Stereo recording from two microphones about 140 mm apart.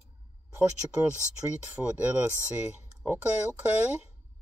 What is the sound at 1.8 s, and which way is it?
Speech, 10° right (ahead or behind).